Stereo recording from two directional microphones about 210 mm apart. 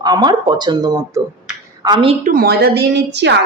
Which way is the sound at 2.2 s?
45° right (ahead or behind).